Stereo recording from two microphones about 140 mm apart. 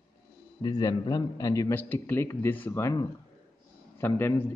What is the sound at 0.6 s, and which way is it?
A man's voice, 30° left (ahead or behind).